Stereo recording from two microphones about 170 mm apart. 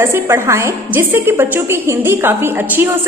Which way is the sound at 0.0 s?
15° right (ahead or behind).